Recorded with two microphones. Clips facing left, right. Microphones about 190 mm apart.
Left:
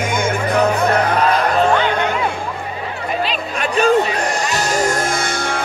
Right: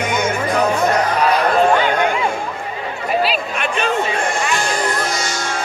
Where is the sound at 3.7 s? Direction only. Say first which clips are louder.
Left 6 dB; 40° left (ahead or behind); by 5.6 s 55° left (ahead or behind).